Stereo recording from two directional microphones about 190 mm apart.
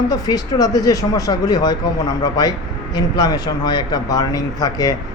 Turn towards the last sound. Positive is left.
turn(degrees=20)  # may be behind; listen again after turning